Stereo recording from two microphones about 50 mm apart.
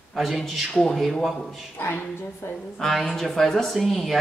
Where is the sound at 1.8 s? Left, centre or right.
Left.